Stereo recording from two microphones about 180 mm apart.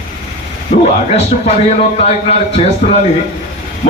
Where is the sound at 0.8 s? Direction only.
35° left (ahead or behind).